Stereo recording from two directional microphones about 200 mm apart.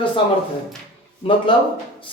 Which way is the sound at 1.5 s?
25° left (ahead or behind).